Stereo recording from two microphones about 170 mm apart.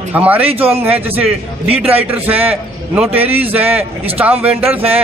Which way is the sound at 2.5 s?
10° right (ahead or behind).